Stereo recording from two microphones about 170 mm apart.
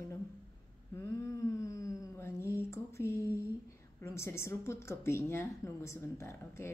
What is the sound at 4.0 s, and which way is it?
A woman's voice, 15° left (ahead or behind).